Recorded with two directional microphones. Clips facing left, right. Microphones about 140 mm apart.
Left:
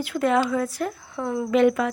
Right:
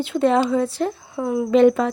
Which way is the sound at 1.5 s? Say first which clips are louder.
Right 4 dB; 30° right (ahead or behind).